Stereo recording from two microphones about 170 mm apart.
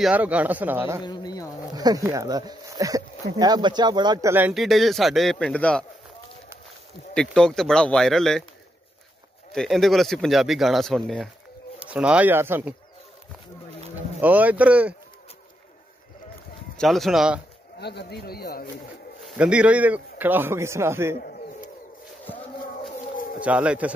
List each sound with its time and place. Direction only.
0.0 s a man's voice: 10° right (ahead or behind)
1.0 s speech: 25° left (ahead or behind)
1.7 s speech: 20° right (ahead or behind)
4.3 s speech: 10° right (ahead or behind); by 5.9 s 5° left (ahead or behind)
7.2 s speech: 5° left (ahead or behind)
9.5 s a man's voice: centre (ahead or behind)
14.2 s a man's voice: 10° right (ahead or behind)
16.7 s speech: centre (ahead or behind)
17.7 s speech: 75° left (ahead or behind)
19.2 s a man's voice: 5° right (ahead or behind)
21.2 s bird: 60° left (ahead or behind)
23.1 s bird: 55° left (ahead or behind)
23.4 s a man's voice: 5° right (ahead or behind)